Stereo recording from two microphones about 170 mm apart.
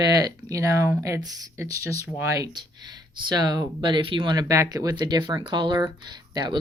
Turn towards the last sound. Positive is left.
turn(degrees=-25)  # may be behind; listen again after turning